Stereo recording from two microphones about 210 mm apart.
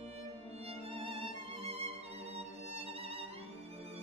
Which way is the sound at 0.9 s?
30° right (ahead or behind).